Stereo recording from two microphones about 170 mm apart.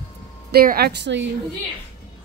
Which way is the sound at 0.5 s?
65° right (ahead or behind).